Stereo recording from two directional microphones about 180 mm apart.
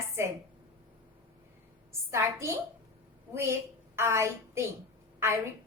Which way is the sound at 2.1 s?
15° right (ahead or behind).